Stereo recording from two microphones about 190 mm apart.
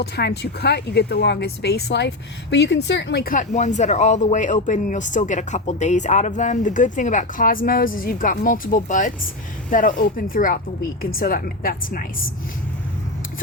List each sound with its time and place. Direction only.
0.0 s speech: 60° left (ahead or behind)